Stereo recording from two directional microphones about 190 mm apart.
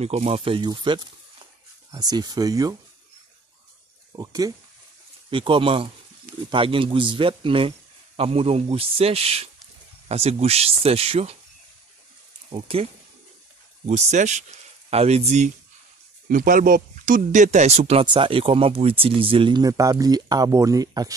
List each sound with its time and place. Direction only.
0.0 s speech: 35° right (ahead or behind)
4.1 s a man's voice: 20° right (ahead or behind)
12.4 s speech: 30° right (ahead or behind)
13.8 s speech: 35° right (ahead or behind); by 21.1 s 20° right (ahead or behind)